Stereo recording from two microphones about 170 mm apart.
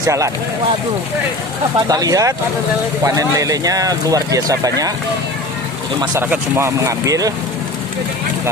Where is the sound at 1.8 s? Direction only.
20° right (ahead or behind).